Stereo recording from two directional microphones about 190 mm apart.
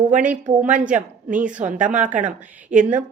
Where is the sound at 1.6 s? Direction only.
40° right (ahead or behind).